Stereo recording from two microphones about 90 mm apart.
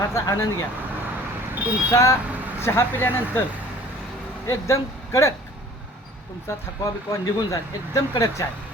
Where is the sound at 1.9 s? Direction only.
35° left (ahead or behind).